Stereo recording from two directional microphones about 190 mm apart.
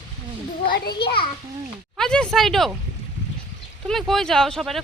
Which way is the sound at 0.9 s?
60° left (ahead or behind).